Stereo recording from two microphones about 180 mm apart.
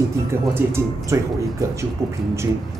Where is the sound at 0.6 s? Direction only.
15° right (ahead or behind).